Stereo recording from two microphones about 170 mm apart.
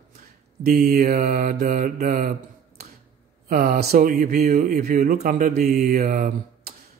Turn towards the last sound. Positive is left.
turn(degrees=-55)  # may be behind; listen again after turning